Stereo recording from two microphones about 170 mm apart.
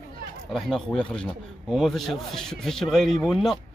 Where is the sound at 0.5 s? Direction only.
Centre (ahead or behind).